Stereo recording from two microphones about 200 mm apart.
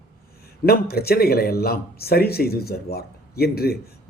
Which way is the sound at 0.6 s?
50° left (ahead or behind).